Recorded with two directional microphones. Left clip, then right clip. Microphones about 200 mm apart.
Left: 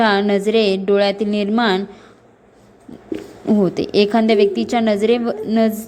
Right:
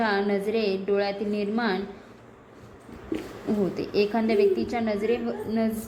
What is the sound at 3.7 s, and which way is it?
A woman's voice, 35° left (ahead or behind).